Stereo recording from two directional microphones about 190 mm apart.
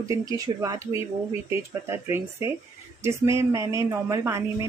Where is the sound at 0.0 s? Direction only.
20° right (ahead or behind).